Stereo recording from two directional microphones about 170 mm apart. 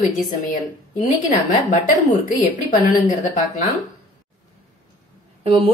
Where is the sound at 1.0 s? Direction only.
45° left (ahead or behind).